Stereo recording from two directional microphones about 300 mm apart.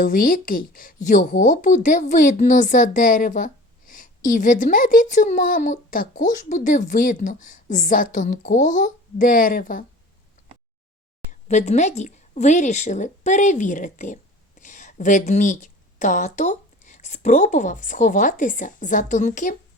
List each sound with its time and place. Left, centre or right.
0.0 s a woman's voice: left
11.3 s a woman's voice: left